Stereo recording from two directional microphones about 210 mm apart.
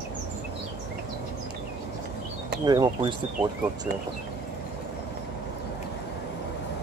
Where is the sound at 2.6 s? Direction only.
20° right (ahead or behind).